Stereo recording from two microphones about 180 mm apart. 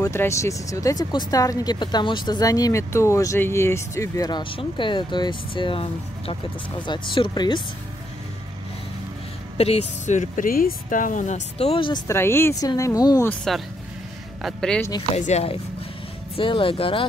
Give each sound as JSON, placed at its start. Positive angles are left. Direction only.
{"t": 0.0, "sound": "speech", "side_deg": 15}
{"t": 9.6, "sound": "speech", "side_deg": 35}
{"t": 12.1, "sound": "speech", "side_deg": 15}
{"t": 13.3, "sound": "speech", "side_deg": 5}
{"t": 15.1, "sound": "speech", "side_deg": 40}